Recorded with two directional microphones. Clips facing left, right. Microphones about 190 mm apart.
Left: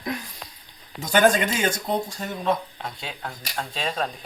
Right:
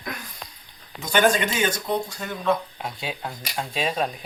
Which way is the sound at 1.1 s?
40° left (ahead or behind).